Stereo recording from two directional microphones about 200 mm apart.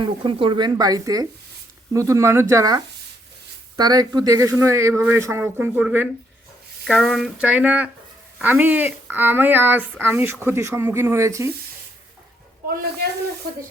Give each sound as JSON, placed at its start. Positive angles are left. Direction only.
{"t": 0.0, "sound": "speech", "side_deg": -25}